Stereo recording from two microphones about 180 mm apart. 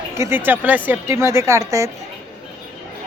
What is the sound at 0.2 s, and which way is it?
Speech, 10° right (ahead or behind).